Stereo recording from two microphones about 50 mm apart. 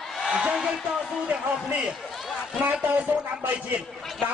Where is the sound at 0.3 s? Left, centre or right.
Centre.